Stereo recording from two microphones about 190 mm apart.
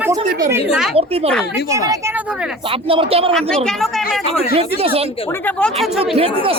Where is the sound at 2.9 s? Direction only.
30° right (ahead or behind).